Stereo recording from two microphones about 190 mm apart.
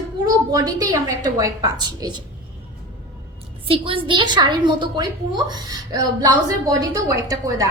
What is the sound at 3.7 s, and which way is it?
A woman's voice, 30° right (ahead or behind).